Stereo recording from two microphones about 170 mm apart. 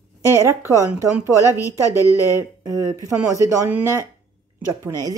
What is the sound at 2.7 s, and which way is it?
Speech, 20° right (ahead or behind).